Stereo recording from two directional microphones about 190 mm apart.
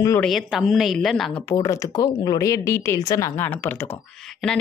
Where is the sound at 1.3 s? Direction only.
25° left (ahead or behind).